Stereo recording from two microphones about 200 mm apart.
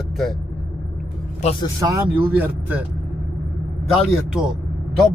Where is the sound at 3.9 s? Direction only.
5° right (ahead or behind).